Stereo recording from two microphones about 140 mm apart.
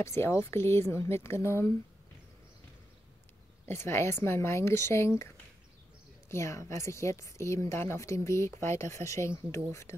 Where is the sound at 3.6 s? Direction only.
20° left (ahead or behind).